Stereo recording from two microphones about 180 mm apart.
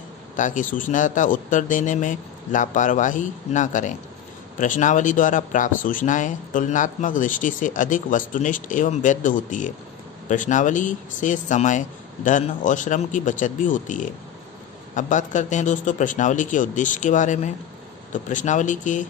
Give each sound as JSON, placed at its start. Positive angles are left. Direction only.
{"t": 0.4, "sound": "speech", "side_deg": 45}